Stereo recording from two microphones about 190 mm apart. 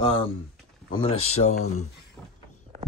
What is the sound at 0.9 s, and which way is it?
Speech, 30° left (ahead or behind).